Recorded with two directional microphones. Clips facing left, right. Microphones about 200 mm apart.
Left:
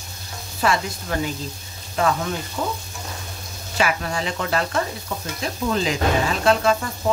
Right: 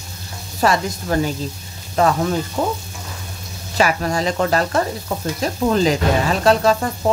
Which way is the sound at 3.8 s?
40° right (ahead or behind).